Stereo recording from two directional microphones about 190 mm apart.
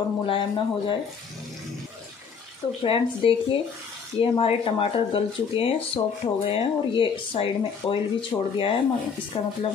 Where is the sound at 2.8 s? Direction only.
30° left (ahead or behind).